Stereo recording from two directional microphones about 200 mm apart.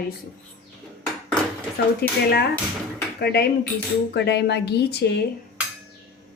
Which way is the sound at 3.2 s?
55° left (ahead or behind).